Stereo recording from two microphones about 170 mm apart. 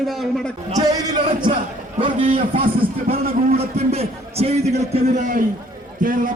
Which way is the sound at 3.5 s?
35° right (ahead or behind).